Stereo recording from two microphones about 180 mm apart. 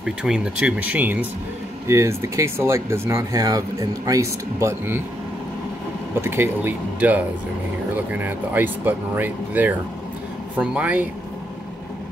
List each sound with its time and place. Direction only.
0.0 s speech: 5° right (ahead or behind)
6.2 s speech: 10° right (ahead or behind)